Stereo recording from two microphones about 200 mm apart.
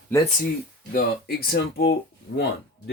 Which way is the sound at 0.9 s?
50° left (ahead or behind).